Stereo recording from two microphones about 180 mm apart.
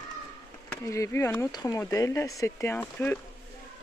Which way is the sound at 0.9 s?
15° left (ahead or behind).